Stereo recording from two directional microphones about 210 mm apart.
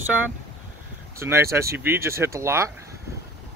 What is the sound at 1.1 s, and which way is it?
Speech, 10° right (ahead or behind).